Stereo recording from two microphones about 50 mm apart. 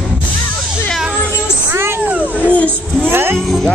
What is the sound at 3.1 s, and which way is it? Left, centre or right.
Music, right.